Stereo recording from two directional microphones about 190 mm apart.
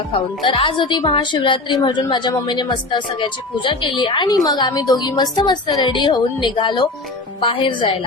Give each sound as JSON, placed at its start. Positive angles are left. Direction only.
{"t": 0.1, "sound": "speech", "side_deg": 25}